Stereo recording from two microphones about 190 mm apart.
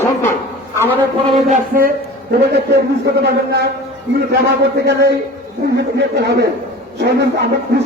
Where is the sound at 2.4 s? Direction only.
60° right (ahead or behind).